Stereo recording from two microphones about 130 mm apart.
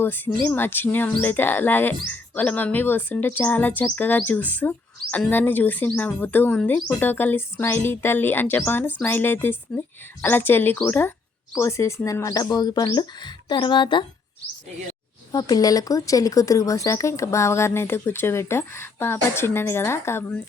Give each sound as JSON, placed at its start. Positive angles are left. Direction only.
{"t": 0.0, "sound": "speech", "side_deg": 15}
{"t": 15.3, "sound": "speech", "side_deg": 30}